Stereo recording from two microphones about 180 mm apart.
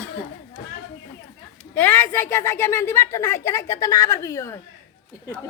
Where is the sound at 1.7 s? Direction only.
10° left (ahead or behind).